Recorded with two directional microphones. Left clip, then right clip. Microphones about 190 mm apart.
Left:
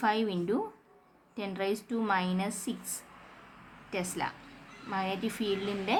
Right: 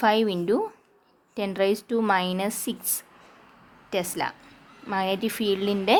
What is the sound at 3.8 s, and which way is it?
Speech, 45° right (ahead or behind).